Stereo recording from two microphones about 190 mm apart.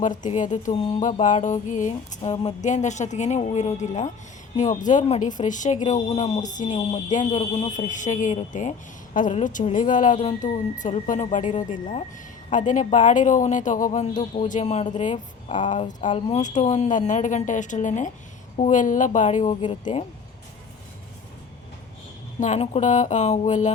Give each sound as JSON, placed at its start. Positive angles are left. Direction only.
{"t": 0.0, "sound": "a woman's voice", "side_deg": 40}
{"t": 19.6, "sound": "speech", "side_deg": 25}
{"t": 22.4, "sound": "speech", "side_deg": 35}